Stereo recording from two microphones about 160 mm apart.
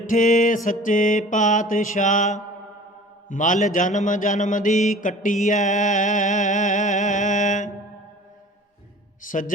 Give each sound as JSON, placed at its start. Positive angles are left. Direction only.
{"t": 0.1, "sound": "mantra", "side_deg": 55}
{"t": 3.2, "sound": "speech", "side_deg": 55}
{"t": 9.2, "sound": "a man's voice", "side_deg": 55}